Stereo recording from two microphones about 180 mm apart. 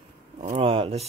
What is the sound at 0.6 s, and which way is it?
Speech, 30° right (ahead or behind).